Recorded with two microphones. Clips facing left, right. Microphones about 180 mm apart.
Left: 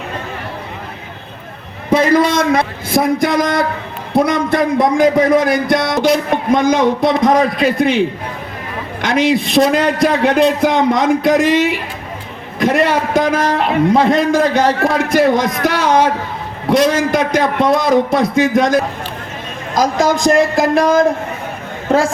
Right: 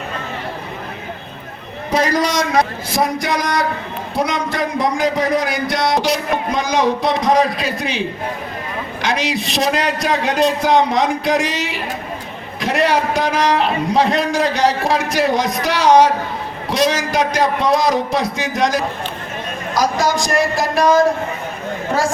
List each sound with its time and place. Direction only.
1.9 s a man's voice: 55° left (ahead or behind)